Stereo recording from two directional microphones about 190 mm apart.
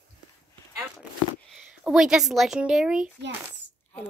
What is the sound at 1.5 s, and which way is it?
Speech, 5° right (ahead or behind).